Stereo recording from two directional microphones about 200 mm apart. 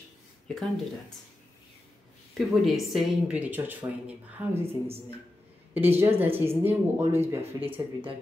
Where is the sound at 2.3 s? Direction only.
Centre (ahead or behind).